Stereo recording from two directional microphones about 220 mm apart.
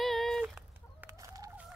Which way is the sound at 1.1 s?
15° right (ahead or behind).